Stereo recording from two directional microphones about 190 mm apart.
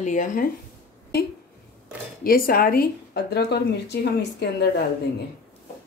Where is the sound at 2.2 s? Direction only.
50° left (ahead or behind).